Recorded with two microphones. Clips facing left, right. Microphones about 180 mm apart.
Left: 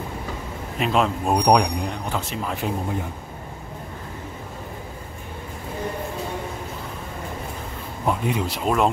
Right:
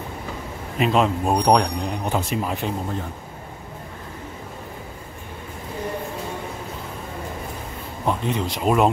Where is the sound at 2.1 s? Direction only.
20° right (ahead or behind).